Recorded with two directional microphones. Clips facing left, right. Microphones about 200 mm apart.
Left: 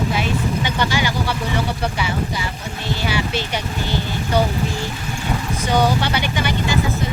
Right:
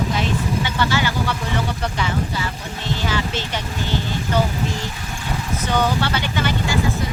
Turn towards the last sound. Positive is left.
turn(degrees=15)  # may be behind; listen again after turning